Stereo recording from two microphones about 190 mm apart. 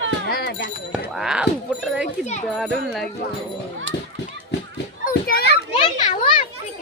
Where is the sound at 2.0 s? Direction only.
35° left (ahead or behind).